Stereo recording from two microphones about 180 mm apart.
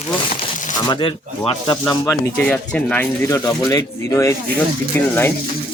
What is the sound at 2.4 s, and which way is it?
Speech, 5° left (ahead or behind).